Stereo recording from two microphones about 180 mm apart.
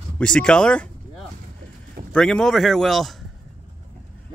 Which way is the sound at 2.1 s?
5° left (ahead or behind).